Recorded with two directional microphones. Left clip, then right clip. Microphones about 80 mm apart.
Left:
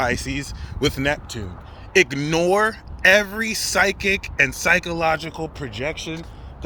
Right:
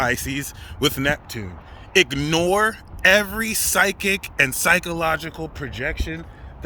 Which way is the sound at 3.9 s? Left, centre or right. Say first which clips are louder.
Left 1 dB; right.